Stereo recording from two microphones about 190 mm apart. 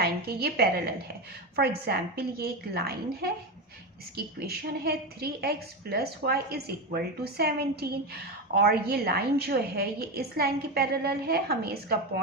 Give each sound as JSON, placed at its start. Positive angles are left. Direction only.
{"t": 0.0, "sound": "a woman's voice", "side_deg": -55}
{"t": 4.4, "sound": "a woman's voice", "side_deg": -55}